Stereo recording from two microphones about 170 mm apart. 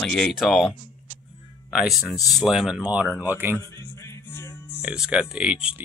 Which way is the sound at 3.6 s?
15° left (ahead or behind).